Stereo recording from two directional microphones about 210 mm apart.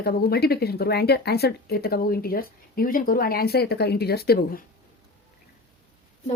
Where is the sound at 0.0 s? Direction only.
50° left (ahead or behind).